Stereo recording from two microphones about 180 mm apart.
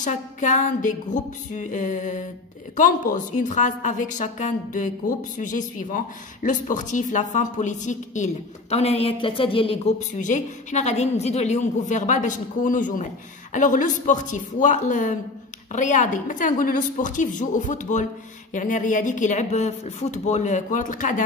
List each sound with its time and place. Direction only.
0.0 s speech: 45° left (ahead or behind)